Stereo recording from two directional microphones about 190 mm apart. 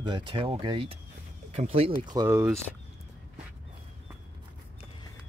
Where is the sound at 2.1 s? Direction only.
15° right (ahead or behind).